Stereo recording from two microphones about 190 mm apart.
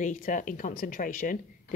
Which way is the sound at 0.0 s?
45° left (ahead or behind).